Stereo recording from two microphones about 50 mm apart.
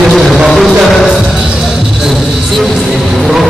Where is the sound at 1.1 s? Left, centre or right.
Centre.